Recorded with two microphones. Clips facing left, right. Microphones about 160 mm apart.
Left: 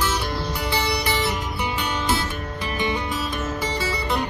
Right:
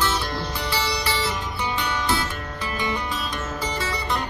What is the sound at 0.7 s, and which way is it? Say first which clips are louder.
Music: left 2 dB; 15° left (ahead or behind).